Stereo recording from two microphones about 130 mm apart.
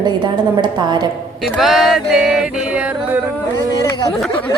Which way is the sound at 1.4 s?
Centre (ahead or behind).